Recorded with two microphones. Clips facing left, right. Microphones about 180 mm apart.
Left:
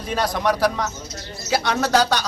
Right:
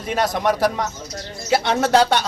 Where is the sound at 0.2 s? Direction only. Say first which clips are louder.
Right 1 dB; 20° right (ahead or behind).